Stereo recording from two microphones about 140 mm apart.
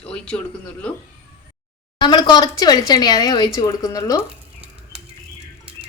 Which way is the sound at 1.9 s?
30° left (ahead or behind).